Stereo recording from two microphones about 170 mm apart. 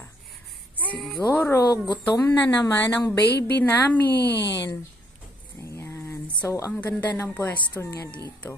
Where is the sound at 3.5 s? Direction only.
10° left (ahead or behind).